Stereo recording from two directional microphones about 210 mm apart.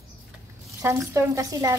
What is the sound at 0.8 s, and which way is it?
Speech, 15° right (ahead or behind).